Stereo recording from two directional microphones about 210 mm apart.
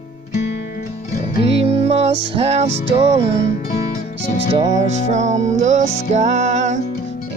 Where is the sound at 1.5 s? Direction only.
30° right (ahead or behind).